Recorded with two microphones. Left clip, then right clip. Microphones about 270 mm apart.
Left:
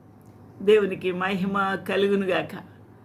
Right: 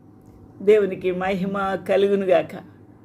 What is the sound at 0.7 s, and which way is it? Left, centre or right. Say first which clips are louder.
A man's voice: right 3 dB; centre.